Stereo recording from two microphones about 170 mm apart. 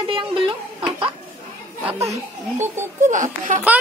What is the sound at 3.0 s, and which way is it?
Speech, 50° right (ahead or behind).